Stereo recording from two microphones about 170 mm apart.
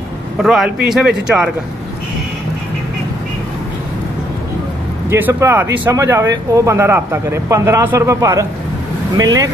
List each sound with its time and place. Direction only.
0.4 s speech: centre (ahead or behind)
5.1 s speech: 15° right (ahead or behind)